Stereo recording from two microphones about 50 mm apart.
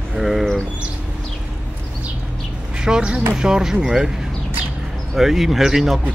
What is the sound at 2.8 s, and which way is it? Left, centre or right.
Speech, centre.